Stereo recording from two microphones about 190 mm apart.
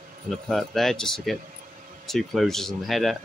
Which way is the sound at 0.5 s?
Centre (ahead or behind).